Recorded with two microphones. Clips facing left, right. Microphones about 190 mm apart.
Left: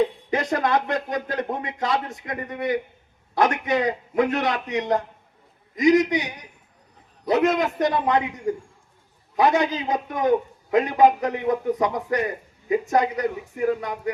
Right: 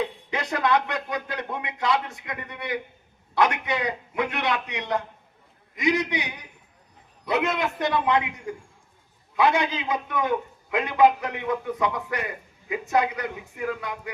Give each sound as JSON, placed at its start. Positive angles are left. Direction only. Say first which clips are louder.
{"t": 0.0, "sound": "speech", "louder": "left 6 dB", "side_deg": 45}
{"t": 7.3, "sound": "a man's voice", "louder": "left 5 dB", "side_deg": 40}